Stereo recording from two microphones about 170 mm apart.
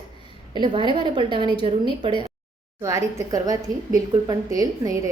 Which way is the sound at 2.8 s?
15° right (ahead or behind).